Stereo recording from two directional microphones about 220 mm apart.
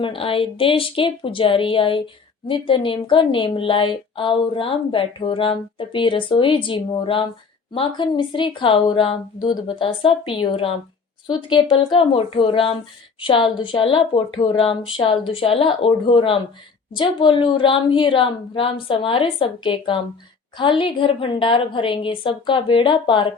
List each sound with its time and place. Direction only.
0.0 s a woman's voice: 25° left (ahead or behind)